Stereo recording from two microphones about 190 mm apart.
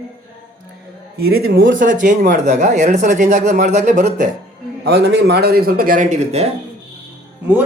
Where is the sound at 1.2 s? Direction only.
55° right (ahead or behind).